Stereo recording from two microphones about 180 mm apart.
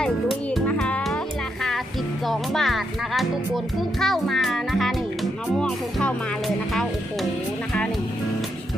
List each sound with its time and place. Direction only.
0.0 s music: centre (ahead or behind)
2.2 s a child's voice: centre (ahead or behind)